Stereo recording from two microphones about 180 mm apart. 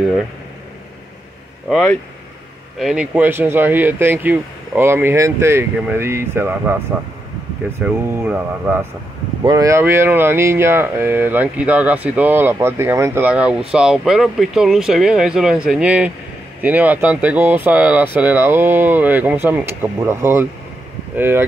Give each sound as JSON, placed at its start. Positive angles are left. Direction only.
{"t": 1.7, "sound": "speech", "side_deg": 5}
{"t": 2.8, "sound": "speech", "side_deg": -5}
{"t": 7.8, "sound": "speech", "side_deg": -10}
{"t": 9.4, "sound": "speech", "side_deg": -20}